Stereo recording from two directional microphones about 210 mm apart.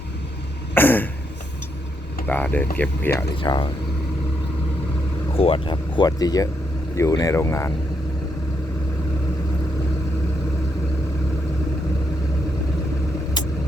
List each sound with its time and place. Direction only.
0.7 s throat clearing: 10° left (ahead or behind)
2.2 s speech: 10° left (ahead or behind)
3.2 s speech: 20° left (ahead or behind)
5.3 s speech: 25° left (ahead or behind)